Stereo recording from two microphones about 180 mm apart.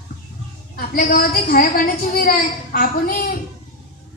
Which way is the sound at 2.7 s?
50° left (ahead or behind).